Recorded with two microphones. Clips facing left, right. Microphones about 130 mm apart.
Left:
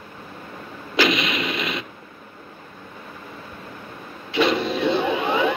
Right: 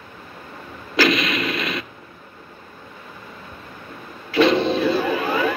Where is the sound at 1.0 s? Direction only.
25° left (ahead or behind).